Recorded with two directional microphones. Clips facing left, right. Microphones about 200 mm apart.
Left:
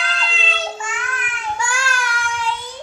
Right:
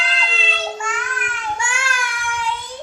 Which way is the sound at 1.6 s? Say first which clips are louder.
Left 2 dB; 25° right (ahead or behind).